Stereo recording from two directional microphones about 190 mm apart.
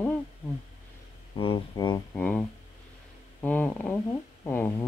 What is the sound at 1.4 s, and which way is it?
Speech, 25° left (ahead or behind).